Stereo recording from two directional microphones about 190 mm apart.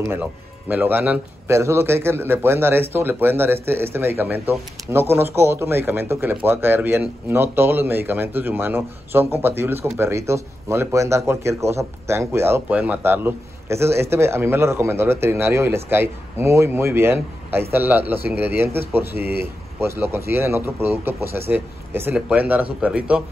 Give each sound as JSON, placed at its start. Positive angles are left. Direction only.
{"t": 0.1, "sound": "speech", "side_deg": -10}
{"t": 19.1, "sound": "speech", "side_deg": -55}
{"t": 19.8, "sound": "speech", "side_deg": -10}